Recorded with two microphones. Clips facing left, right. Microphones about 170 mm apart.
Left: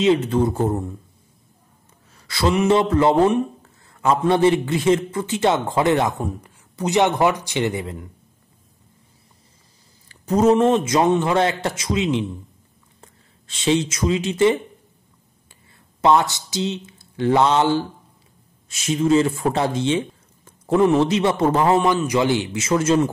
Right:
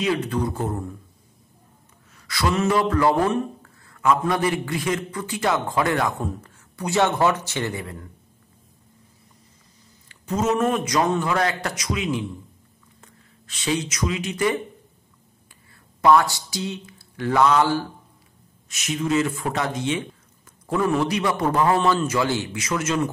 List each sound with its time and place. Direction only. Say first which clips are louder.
0.0 s a man's voice: left 6 dB; 25° left (ahead or behind)
2.1 s a sound: left 4 dB; 30° left (ahead or behind)
2.5 s a man's voice: left 4 dB; 20° left (ahead or behind)
10.0 s a man's voice: left 7 dB; 35° left (ahead or behind)
16.0 s a man's voice: even; 20° left (ahead or behind)